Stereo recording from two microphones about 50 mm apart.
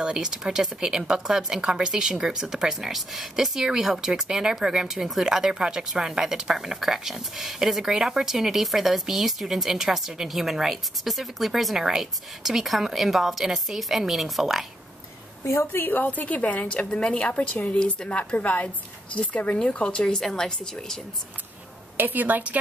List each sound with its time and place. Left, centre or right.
0.0 s a woman's voice: centre
15.7 s a woman's voice: left
17.9 s speech: centre
18.3 s a woman's voice: left
20.2 s speech: centre
21.9 s a woman's voice: right